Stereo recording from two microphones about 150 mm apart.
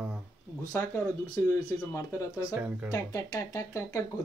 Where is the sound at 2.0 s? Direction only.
20° left (ahead or behind).